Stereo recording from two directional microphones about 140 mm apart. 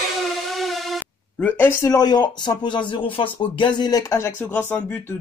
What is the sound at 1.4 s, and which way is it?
Speech, 15° left (ahead or behind).